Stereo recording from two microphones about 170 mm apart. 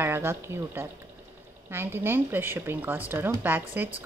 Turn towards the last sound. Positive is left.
turn(degrees=-10)  # may be behind; listen again after turning